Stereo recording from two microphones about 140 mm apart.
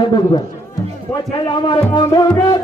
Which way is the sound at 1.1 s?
35° left (ahead or behind).